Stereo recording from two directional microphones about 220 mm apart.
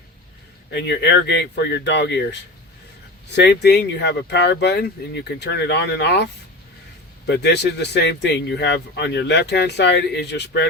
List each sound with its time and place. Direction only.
0.7 s speech: 50° left (ahead or behind)
3.3 s speech: 50° left (ahead or behind)
7.3 s speech: 50° left (ahead or behind)